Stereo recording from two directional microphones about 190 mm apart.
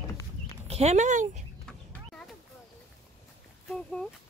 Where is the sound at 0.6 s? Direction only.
35° right (ahead or behind).